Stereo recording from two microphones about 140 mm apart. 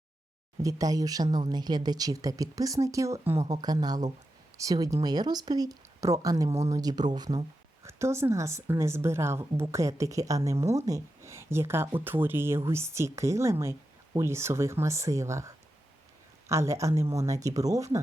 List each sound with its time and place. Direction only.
0.6 s speech: 25° right (ahead or behind)